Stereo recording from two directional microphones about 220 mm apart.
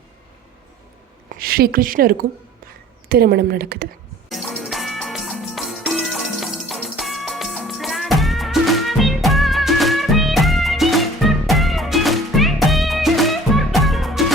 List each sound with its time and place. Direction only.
1.4 s a woman's voice: 45° right (ahead or behind)
4.3 s music: centre (ahead or behind)